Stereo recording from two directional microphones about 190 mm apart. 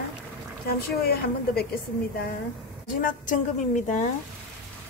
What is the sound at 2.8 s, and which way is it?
A woman's voice, 45° left (ahead or behind).